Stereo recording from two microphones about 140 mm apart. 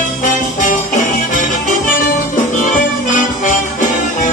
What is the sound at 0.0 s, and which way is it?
Music, 65° left (ahead or behind).